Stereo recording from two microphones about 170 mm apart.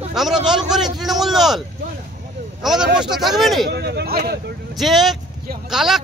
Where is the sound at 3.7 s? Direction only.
75° right (ahead or behind).